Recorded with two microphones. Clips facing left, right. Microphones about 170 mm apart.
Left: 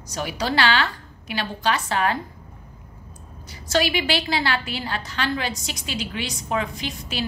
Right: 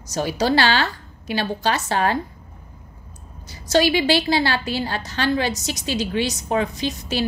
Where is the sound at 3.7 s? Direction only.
30° right (ahead or behind).